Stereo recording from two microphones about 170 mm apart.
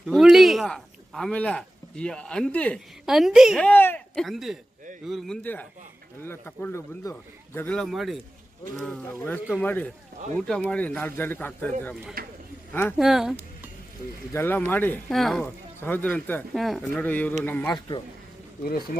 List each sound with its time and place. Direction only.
0.1 s speech: centre (ahead or behind)
3.7 s speech: 10° left (ahead or behind)
12.2 s speech: 60° right (ahead or behind)
13.0 s speech: centre (ahead or behind)
14.3 s speech: 10° left (ahead or behind)
16.9 s speech: 10° left (ahead or behind)
18.6 s speech: 60° left (ahead or behind)